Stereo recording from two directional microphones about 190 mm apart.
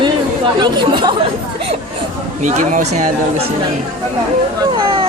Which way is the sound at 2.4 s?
40° right (ahead or behind).